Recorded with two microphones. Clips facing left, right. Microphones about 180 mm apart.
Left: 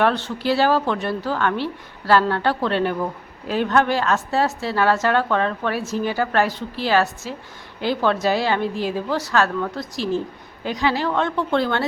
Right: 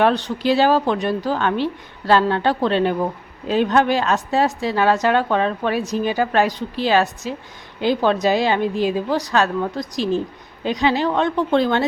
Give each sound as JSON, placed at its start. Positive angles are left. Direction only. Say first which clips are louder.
{"t": 0.0, "sound": "a woman's voice", "louder": "right 3 dB", "side_deg": -15}